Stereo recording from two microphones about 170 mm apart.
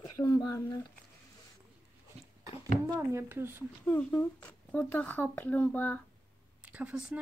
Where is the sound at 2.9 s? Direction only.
15° right (ahead or behind).